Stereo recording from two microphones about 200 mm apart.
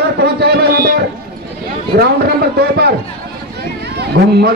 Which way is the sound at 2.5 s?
55° right (ahead or behind).